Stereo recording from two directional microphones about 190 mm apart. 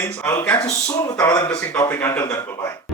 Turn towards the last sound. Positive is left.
turn(degrees=10)  # may be behind; listen again after turning